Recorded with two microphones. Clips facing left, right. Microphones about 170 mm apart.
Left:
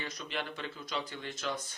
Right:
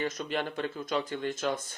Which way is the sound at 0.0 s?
45° right (ahead or behind).